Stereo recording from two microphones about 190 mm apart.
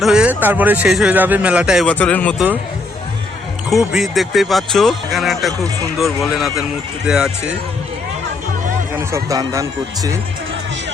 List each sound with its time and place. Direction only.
0.0 s speech: 5° right (ahead or behind)
3.7 s speech: centre (ahead or behind)
9.0 s speech: 15° right (ahead or behind)